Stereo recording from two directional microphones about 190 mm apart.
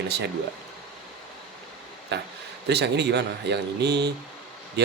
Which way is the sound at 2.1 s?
60° right (ahead or behind).